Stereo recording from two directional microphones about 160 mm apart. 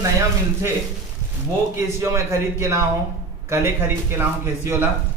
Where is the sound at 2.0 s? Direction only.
15° right (ahead or behind).